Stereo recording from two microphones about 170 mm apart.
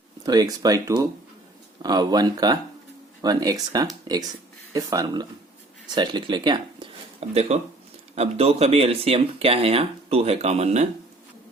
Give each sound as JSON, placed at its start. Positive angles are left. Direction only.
{"t": 0.2, "sound": "speech", "side_deg": -20}